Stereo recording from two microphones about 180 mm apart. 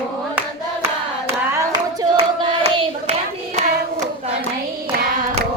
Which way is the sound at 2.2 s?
35° right (ahead or behind).